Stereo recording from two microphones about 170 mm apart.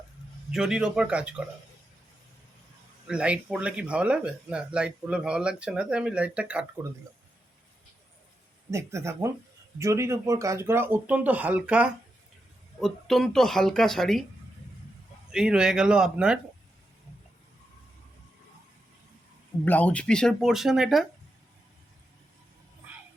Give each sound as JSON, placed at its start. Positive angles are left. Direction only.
{"t": 0.5, "sound": "speech", "side_deg": -5}
{"t": 3.1, "sound": "speech", "side_deg": -5}
{"t": 8.7, "sound": "speech", "side_deg": -15}
{"t": 15.3, "sound": "speech", "side_deg": -5}
{"t": 19.6, "sound": "speech", "side_deg": 10}